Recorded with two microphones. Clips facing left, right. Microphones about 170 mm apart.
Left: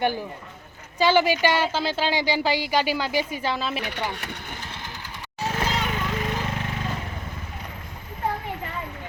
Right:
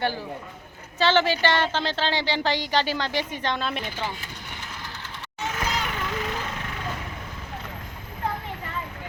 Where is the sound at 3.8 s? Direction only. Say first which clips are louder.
Left 2 dB; 70° left (ahead or behind).